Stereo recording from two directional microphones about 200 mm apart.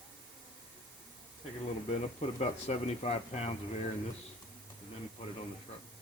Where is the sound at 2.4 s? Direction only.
35° left (ahead or behind).